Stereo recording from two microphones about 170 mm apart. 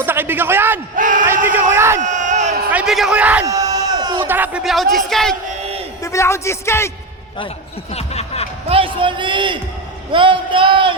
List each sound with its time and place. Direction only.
0.0 s a man's voice: 10° right (ahead or behind)
0.9 s speech: 50° right (ahead or behind)
1.5 s a man's voice: 10° right (ahead or behind)
2.0 s a sound: 45° right (ahead or behind)
2.7 s a man's voice: centre (ahead or behind)
3.4 s a sound: 20° right (ahead or behind)
4.3 s speech: 10° right (ahead or behind)
6.0 s speech: 20° left (ahead or behind)
7.9 s music: 40° left (ahead or behind)
8.7 s a man's voice: 30° right (ahead or behind)